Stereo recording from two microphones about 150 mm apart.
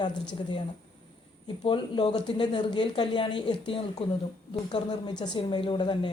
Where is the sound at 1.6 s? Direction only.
35° left (ahead or behind).